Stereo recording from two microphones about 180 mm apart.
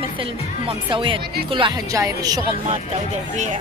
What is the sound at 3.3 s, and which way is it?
Speech, 40° right (ahead or behind).